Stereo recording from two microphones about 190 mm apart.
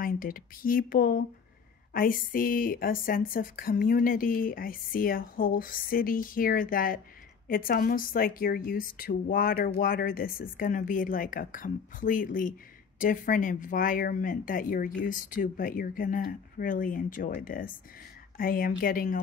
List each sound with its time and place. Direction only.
0.0 s a woman's voice: 50° left (ahead or behind)